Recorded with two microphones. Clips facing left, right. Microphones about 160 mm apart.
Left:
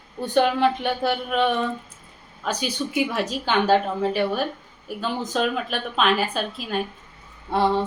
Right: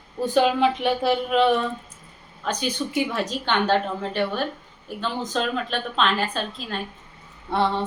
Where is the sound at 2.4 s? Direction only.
10° left (ahead or behind).